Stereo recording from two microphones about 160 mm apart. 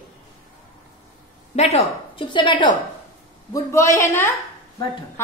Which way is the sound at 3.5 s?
20° left (ahead or behind).